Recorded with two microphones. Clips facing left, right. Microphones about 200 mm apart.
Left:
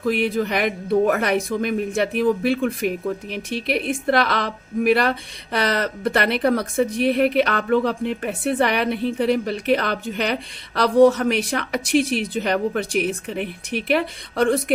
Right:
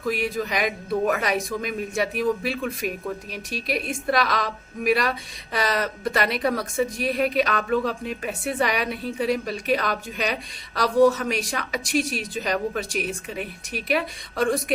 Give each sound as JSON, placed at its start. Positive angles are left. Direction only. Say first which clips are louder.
{"t": 0.1, "sound": "a woman's voice", "louder": "left 5 dB", "side_deg": 60}